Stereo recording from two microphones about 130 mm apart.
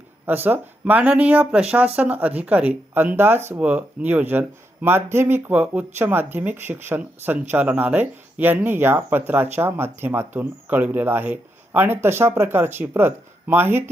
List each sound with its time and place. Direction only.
0.3 s speech: 15° right (ahead or behind)